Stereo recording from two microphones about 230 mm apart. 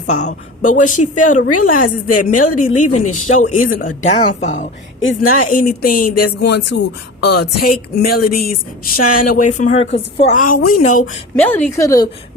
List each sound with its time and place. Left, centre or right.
0.1 s a woman's voice: left
2.0 s a woman's voice: left
2.8 s speech: left
3.1 s a woman's voice: left
4.9 s a woman's voice: left
5.5 s a woman's voice: left
6.2 s speech: left
7.9 s a woman's voice: left
11.3 s a woman's voice: centre